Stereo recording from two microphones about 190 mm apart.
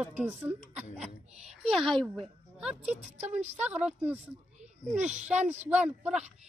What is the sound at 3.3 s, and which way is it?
Speech, 35° right (ahead or behind).